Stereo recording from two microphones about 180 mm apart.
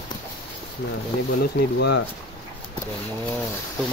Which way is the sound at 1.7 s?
75° left (ahead or behind).